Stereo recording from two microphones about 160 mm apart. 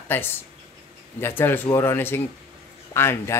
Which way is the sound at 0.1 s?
15° left (ahead or behind).